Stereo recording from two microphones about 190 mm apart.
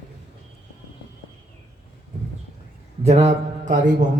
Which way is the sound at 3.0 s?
35° right (ahead or behind).